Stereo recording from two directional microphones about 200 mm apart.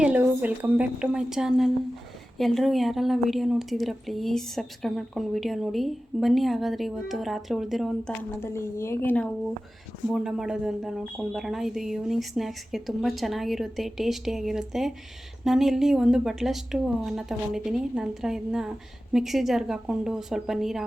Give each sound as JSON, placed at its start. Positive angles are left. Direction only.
{"t": 0.0, "sound": "a woman's voice", "side_deg": -5}